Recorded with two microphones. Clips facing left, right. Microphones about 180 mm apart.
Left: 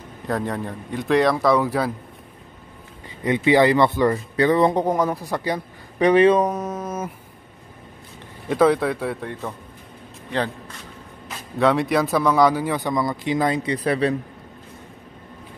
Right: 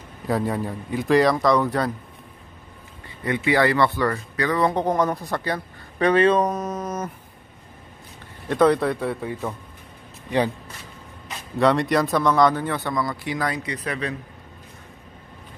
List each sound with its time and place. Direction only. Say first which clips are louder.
0.3 s speech: right 1 dB; 5° right (ahead or behind)
3.3 s speech: left 4 dB; 20° left (ahead or behind)
4.7 s a man's voice: left 1 dB; 10° left (ahead or behind)
8.5 s speech: left 1 dB; 5° left (ahead or behind)
11.2 s a man's voice: even; centre (ahead or behind); by 14.1 s 35° left (ahead or behind)